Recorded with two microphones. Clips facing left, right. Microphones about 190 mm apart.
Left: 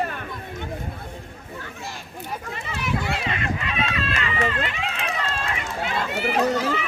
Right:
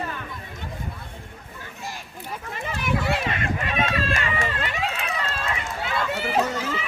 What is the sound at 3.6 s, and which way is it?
Chicken, 50° right (ahead or behind).